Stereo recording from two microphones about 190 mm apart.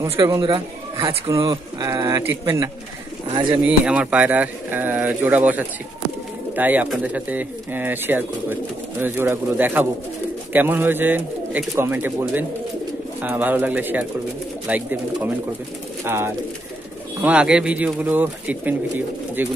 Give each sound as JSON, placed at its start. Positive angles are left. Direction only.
{"t": 0.0, "sound": "speech", "side_deg": -15}
{"t": 3.3, "sound": "speech", "side_deg": -25}
{"t": 3.6, "sound": "speech", "side_deg": -5}